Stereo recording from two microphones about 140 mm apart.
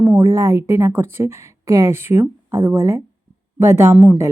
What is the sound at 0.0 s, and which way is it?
Speech, 15° right (ahead or behind).